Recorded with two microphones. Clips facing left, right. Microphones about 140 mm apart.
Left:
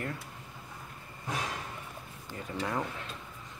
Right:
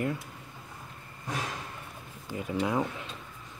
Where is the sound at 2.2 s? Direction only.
10° right (ahead or behind).